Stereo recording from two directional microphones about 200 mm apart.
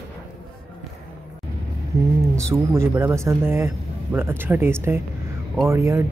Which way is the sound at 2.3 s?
15° right (ahead or behind).